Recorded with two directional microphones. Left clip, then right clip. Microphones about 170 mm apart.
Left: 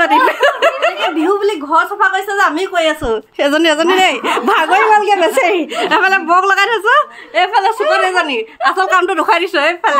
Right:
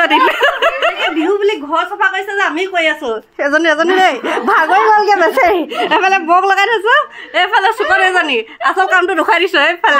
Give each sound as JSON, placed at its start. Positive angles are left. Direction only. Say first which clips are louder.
{"t": 0.0, "sound": "snicker", "louder": "even", "side_deg": -25}
{"t": 1.7, "sound": "a woman's voice", "louder": "left 2 dB", "side_deg": 20}
{"t": 3.4, "sound": "speech", "louder": "even", "side_deg": 65}
{"t": 5.0, "sound": "speech", "louder": "right 1 dB", "side_deg": 10}
{"t": 7.3, "sound": "a woman's voice", "louder": "even", "side_deg": -15}
{"t": 8.7, "sound": "a woman's voice", "louder": "right 2 dB", "side_deg": 5}
{"t": 9.3, "sound": "a woman's voice", "louder": "right 2 dB", "side_deg": -15}